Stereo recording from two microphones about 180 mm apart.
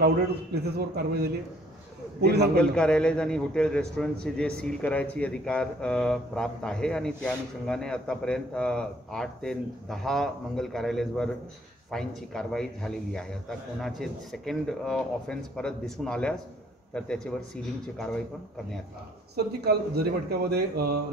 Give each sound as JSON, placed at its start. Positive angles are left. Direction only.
{"t": 0.7, "sound": "a man's voice", "side_deg": -65}
{"t": 2.5, "sound": "a man's voice", "side_deg": 5}
{"t": 19.3, "sound": "a man's voice", "side_deg": -65}